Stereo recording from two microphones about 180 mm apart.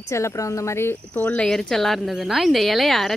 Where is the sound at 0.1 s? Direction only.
15° left (ahead or behind).